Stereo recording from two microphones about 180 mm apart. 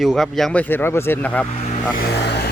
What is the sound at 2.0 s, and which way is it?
Vehicle, 65° left (ahead or behind).